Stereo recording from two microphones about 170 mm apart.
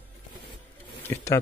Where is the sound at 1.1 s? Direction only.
15° left (ahead or behind).